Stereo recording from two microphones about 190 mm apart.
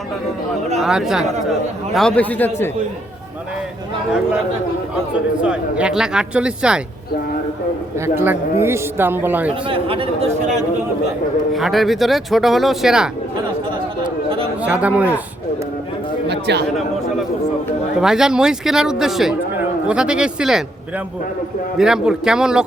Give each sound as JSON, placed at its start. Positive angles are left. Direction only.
{"t": 0.8, "sound": "a man's voice", "side_deg": -5}
{"t": 5.4, "sound": "a man's voice", "side_deg": -5}
{"t": 7.9, "sound": "a man's voice", "side_deg": -15}
{"t": 9.6, "sound": "a man's voice", "side_deg": -30}
{"t": 11.5, "sound": "a man's voice", "side_deg": 0}
{"t": 14.6, "sound": "a man's voice", "side_deg": -5}
{"t": 16.3, "sound": "a man's voice", "side_deg": -60}
{"t": 18.0, "sound": "a man's voice", "side_deg": -5}
{"t": 21.8, "sound": "a man's voice", "side_deg": -5}